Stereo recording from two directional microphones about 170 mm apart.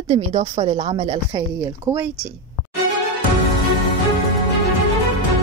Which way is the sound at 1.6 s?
20° right (ahead or behind).